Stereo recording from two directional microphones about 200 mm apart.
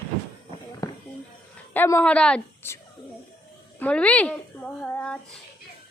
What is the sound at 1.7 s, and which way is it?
A woman's voice, 10° left (ahead or behind).